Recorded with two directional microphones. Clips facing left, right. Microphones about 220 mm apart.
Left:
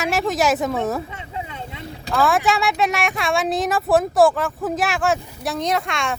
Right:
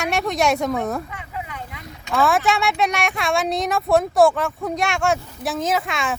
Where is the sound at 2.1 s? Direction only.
Centre (ahead or behind).